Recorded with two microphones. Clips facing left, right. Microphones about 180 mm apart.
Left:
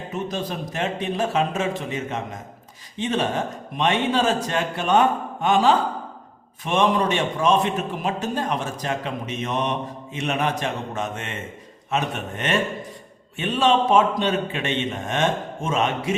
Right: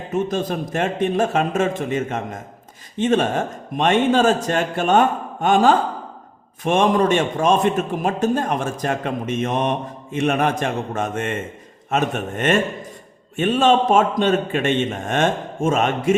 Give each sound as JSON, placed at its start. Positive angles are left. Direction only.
{"t": 0.1, "sound": "a man's voice", "side_deg": -50}